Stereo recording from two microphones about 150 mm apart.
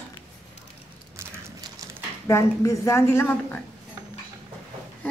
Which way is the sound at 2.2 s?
20° left (ahead or behind).